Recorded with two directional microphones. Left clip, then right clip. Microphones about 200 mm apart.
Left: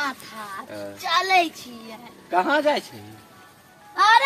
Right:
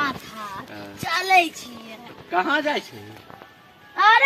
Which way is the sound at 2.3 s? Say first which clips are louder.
Left 2 dB; 20° left (ahead or behind).